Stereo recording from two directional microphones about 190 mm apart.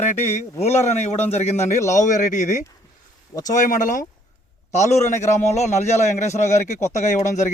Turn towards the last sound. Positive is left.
turn(degrees=40)  # may be behind; listen again after turning